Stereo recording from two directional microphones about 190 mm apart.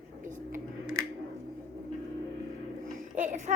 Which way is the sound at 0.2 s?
45° right (ahead or behind).